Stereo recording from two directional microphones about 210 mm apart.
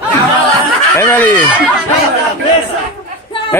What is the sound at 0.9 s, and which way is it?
Speech, 10° left (ahead or behind).